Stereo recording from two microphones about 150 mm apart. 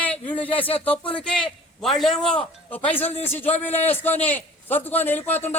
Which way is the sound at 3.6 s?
10° left (ahead or behind).